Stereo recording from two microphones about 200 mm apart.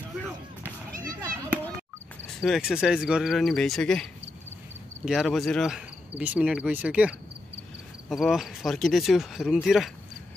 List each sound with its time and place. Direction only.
1.2 s children playing: 15° right (ahead or behind)
2.2 s speech: centre (ahead or behind)
5.0 s speech: centre (ahead or behind)